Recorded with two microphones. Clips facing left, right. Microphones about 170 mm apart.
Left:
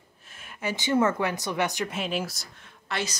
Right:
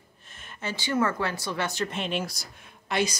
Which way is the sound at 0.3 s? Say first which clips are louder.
Left 3 dB; 5° left (ahead or behind).